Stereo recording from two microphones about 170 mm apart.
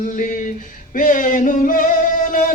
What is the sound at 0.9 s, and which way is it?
Music, 50° left (ahead or behind).